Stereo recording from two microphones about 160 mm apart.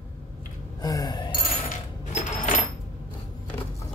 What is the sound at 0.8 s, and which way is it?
Gasp, 25° left (ahead or behind).